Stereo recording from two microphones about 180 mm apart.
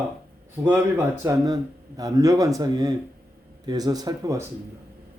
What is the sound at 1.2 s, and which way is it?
Speech, 15° right (ahead or behind).